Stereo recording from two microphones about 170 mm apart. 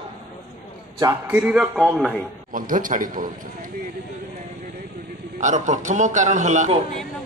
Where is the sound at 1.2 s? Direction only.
5° right (ahead or behind).